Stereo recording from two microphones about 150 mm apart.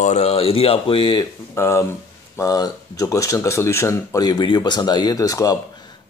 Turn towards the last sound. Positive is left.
turn(degrees=25)  # may be behind; listen again after turning